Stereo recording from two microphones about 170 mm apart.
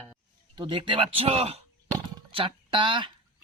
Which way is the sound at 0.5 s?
25° right (ahead or behind).